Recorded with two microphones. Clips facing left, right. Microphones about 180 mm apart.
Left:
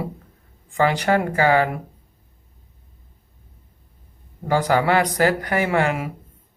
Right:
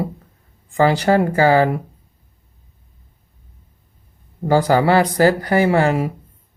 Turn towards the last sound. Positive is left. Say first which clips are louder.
# right 5 dB
turn(degrees=-35)  # may be behind; listen again after turning